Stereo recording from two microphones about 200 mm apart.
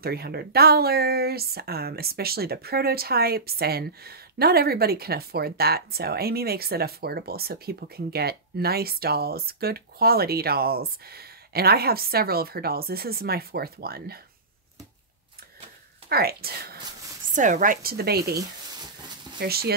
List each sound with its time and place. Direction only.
0.0 s speech: 50° right (ahead or behind)
16.1 s speech: 50° right (ahead or behind)
17.3 s speech: 40° right (ahead or behind)
19.4 s speech: 50° right (ahead or behind)